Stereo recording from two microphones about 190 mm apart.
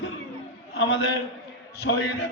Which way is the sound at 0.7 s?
70° left (ahead or behind).